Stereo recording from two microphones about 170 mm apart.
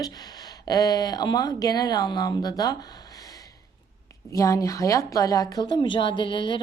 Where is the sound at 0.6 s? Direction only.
20° left (ahead or behind).